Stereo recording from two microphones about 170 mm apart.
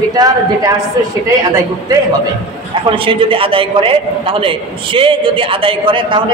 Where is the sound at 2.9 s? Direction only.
30° right (ahead or behind).